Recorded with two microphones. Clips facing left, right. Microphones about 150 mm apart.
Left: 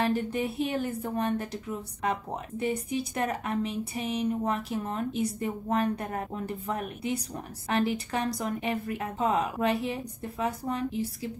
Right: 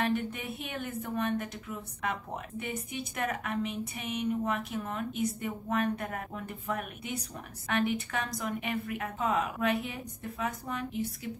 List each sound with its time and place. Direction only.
0.0 s speech: 35° left (ahead or behind)